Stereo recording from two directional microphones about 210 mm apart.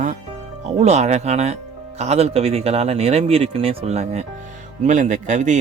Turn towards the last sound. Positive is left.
turn(degrees=-35)  # may be behind; listen again after turning